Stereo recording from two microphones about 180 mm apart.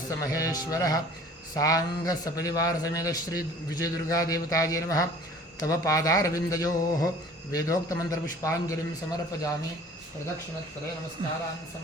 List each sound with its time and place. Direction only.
0.2 s a man's voice: 20° left (ahead or behind)
11.2 s speech: 30° right (ahead or behind)